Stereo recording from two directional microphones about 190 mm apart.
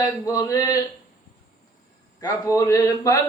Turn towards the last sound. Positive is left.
turn(degrees=15)  # may be behind; listen again after turning